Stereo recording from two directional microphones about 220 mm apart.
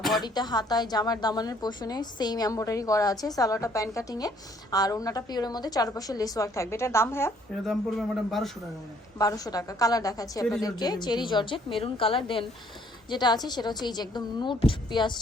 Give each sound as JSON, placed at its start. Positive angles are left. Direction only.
{"t": 0.2, "sound": "a woman's voice", "side_deg": 20}
{"t": 9.1, "sound": "a woman's voice", "side_deg": 15}